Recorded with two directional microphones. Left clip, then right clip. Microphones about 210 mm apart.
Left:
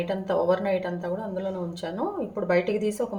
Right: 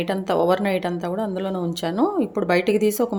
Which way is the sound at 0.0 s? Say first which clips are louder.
Right 4 dB; 55° right (ahead or behind).